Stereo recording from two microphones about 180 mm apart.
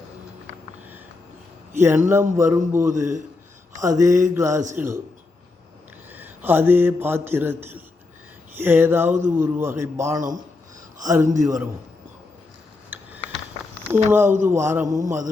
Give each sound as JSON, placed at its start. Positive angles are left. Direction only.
{"t": 1.7, "sound": "a man's voice", "side_deg": -15}
{"t": 6.1, "sound": "a man's voice", "side_deg": -10}
{"t": 12.9, "sound": "a sound", "side_deg": -10}
{"t": 13.9, "sound": "a man's voice", "side_deg": -10}